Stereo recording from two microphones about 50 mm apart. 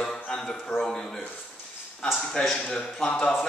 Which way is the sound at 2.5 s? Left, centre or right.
Centre.